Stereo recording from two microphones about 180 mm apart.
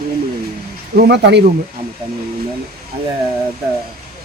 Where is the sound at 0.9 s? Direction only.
70° right (ahead or behind).